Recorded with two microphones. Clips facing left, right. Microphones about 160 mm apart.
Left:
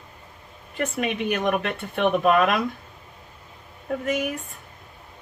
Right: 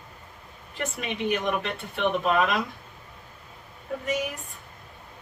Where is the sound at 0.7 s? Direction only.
55° left (ahead or behind).